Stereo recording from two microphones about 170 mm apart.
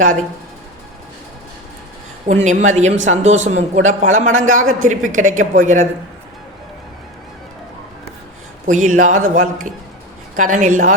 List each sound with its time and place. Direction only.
2.2 s a woman's voice: 45° right (ahead or behind)
8.6 s a woman's voice: 45° right (ahead or behind)